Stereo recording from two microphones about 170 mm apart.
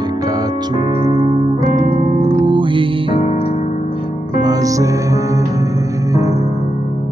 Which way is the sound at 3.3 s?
40° left (ahead or behind).